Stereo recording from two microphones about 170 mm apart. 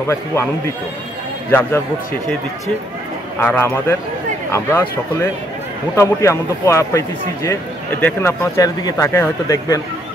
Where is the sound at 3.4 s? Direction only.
10° left (ahead or behind).